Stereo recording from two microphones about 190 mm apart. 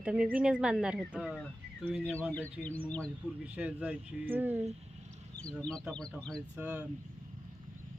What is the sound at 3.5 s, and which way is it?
Speech, 5° right (ahead or behind).